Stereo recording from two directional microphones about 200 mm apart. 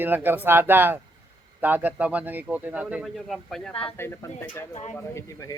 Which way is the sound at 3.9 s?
10° left (ahead or behind).